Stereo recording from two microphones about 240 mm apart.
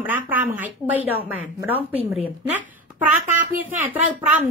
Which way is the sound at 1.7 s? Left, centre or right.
Right.